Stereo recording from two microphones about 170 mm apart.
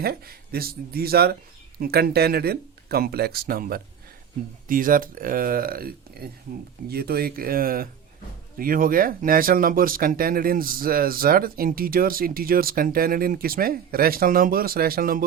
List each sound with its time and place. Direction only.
0.0 s speech: 65° right (ahead or behind)